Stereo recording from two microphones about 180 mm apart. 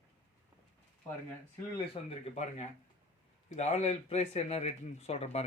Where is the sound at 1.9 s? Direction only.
35° left (ahead or behind).